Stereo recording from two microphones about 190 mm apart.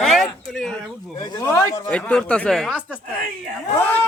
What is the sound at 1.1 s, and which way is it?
Speech, 15° left (ahead or behind).